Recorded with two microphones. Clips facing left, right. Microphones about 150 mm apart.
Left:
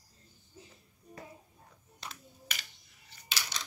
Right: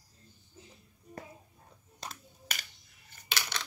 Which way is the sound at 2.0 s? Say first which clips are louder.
Right 2 dB; 40° right (ahead or behind).